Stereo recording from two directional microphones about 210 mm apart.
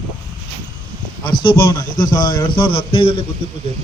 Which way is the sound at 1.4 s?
20° left (ahead or behind).